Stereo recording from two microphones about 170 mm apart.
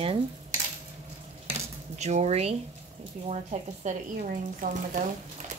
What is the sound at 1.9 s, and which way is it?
A woman's voice, 40° right (ahead or behind).